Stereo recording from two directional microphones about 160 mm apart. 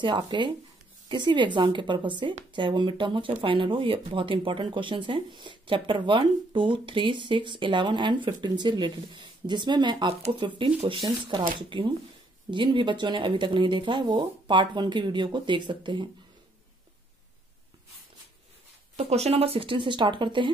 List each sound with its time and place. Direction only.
0.0 s speech: 30° right (ahead or behind)
18.9 s speech: 40° right (ahead or behind)